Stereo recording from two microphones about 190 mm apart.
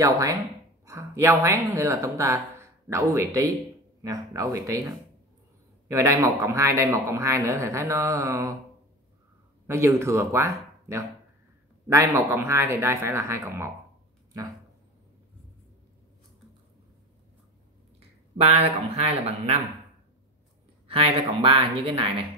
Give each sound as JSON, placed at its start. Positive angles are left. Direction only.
{"t": 0.8, "sound": "speech", "side_deg": -15}
{"t": 9.7, "sound": "speech", "side_deg": -15}
{"t": 18.4, "sound": "speech", "side_deg": -35}
{"t": 20.9, "sound": "speech", "side_deg": -30}